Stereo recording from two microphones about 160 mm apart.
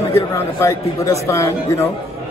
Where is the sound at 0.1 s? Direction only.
15° left (ahead or behind).